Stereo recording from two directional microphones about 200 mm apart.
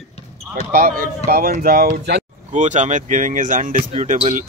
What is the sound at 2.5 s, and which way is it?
Speech, 35° right (ahead or behind).